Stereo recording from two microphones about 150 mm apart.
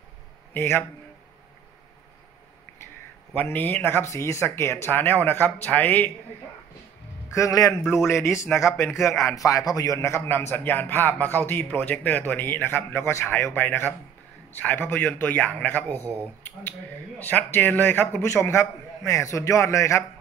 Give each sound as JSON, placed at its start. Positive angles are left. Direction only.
{"t": 0.5, "sound": "a man's voice", "side_deg": 15}
{"t": 3.3, "sound": "a man's voice", "side_deg": 10}
{"t": 7.2, "sound": "a man's voice", "side_deg": 20}
{"t": 7.8, "sound": "speech", "side_deg": -5}
{"t": 8.1, "sound": "a man's voice", "side_deg": 20}
{"t": 16.0, "sound": "speech", "side_deg": -15}
{"t": 17.2, "sound": "a man's voice", "side_deg": 10}